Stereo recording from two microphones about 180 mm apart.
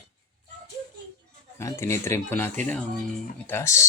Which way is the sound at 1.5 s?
15° left (ahead or behind).